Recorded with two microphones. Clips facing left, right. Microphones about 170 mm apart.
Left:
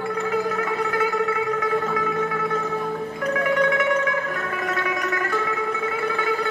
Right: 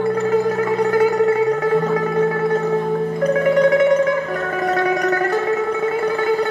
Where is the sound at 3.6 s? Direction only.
35° right (ahead or behind).